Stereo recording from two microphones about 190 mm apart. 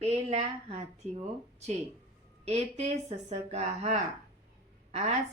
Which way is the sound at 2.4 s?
35° right (ahead or behind).